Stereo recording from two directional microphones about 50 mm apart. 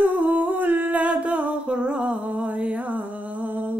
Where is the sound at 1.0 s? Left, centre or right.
Right.